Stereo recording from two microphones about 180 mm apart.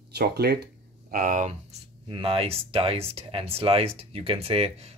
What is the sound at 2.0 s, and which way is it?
Speech, 30° right (ahead or behind).